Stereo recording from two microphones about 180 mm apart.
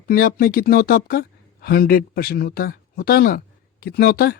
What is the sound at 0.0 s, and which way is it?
Speech, 55° left (ahead or behind).